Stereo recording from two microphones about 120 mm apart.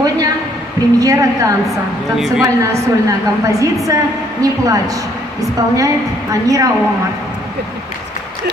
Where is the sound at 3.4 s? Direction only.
25° right (ahead or behind).